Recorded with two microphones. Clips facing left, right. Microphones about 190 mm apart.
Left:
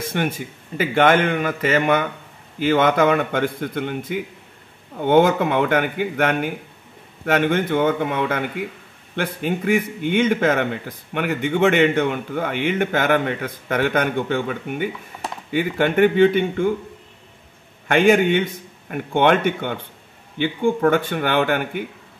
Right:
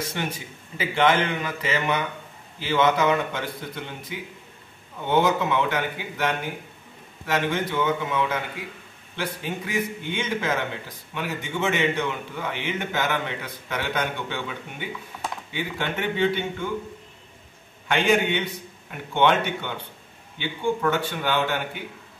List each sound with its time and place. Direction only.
0.0 s a man's voice: 55° left (ahead or behind)
17.8 s a man's voice: 50° left (ahead or behind)